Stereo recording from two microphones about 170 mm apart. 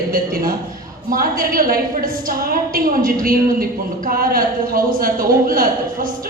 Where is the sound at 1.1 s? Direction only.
55° right (ahead or behind).